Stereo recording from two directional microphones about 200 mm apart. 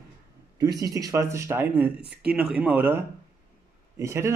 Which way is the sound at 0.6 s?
20° right (ahead or behind).